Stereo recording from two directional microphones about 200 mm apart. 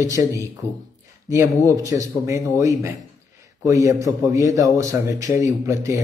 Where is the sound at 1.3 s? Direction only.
15° right (ahead or behind).